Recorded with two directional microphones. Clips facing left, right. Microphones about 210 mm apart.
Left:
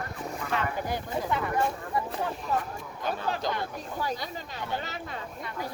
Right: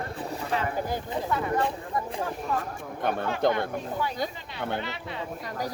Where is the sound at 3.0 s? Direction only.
60° right (ahead or behind).